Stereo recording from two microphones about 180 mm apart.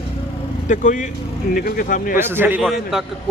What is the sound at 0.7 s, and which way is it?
Speech, 45° left (ahead or behind).